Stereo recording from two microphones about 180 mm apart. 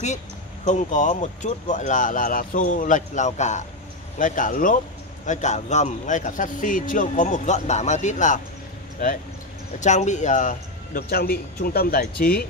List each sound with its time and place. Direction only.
0.7 s a man's voice: 40° left (ahead or behind)
9.8 s speech: 40° left (ahead or behind)